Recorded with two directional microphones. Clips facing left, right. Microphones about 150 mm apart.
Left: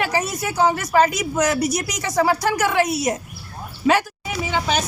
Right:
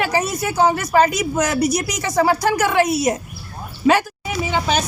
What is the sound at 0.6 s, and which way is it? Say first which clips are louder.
Speech: right 1 dB; 45° right (ahead or behind).